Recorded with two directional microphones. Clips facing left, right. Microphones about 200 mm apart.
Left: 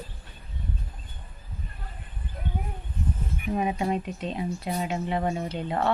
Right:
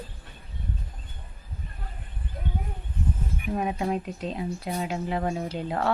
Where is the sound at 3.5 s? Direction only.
5° left (ahead or behind).